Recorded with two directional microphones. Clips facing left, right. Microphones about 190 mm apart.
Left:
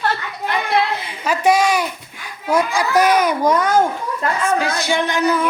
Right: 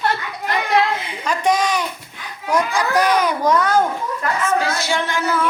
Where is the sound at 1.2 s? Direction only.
10° left (ahead or behind).